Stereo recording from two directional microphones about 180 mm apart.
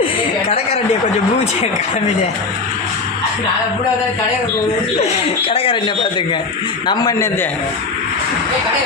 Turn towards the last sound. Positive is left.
turn(degrees=20)  # may be behind; listen again after turning